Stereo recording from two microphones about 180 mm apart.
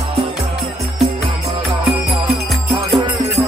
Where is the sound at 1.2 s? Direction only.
30° right (ahead or behind).